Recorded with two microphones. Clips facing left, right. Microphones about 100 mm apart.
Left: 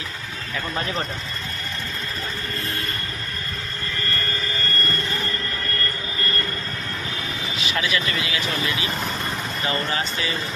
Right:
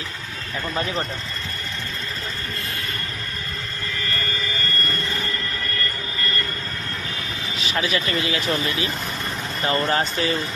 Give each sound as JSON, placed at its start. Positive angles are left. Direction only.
{"t": 7.8, "sound": "speech", "side_deg": -35}
{"t": 9.6, "sound": "speech", "side_deg": -40}